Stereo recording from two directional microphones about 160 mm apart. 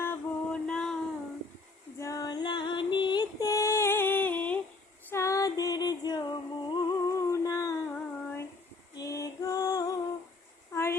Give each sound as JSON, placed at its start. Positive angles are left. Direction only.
{"t": 0.0, "sound": "music", "side_deg": 10}
{"t": 2.0, "sound": "female singing", "side_deg": 20}
{"t": 5.0, "sound": "music", "side_deg": 15}
{"t": 7.9, "sound": "female singing", "side_deg": 10}
{"t": 9.0, "sound": "music", "side_deg": 20}
{"t": 10.7, "sound": "a sound", "side_deg": 15}